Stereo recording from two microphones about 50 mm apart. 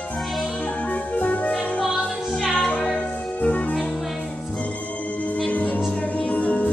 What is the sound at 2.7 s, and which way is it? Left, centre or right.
Music, left.